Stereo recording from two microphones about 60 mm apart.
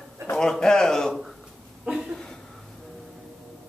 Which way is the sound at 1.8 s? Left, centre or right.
Centre.